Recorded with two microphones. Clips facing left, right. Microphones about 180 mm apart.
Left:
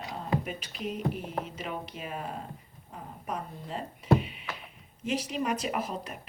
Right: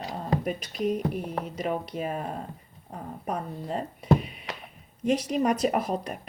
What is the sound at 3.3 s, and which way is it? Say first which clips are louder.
Speech: right 5 dB; 40° right (ahead or behind).